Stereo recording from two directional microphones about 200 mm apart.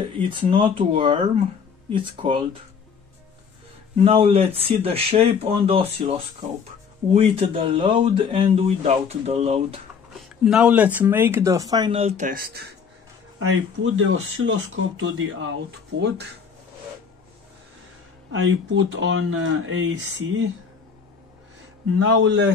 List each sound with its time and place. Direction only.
0.2 s speech: 25° right (ahead or behind)
3.9 s speech: 30° right (ahead or behind)
10.4 s speech: 5° right (ahead or behind); by 12.3 s 30° right (ahead or behind)
12.3 s speech: 50° right (ahead or behind)
13.4 s speech: 90° right
15.0 s speech: 75° right (ahead or behind)
18.3 s speech: 70° right (ahead or behind)
22.0 s a man's voice: 65° right (ahead or behind)